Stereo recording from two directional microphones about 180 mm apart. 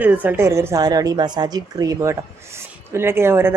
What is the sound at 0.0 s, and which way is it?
A woman's voice, 10° right (ahead or behind).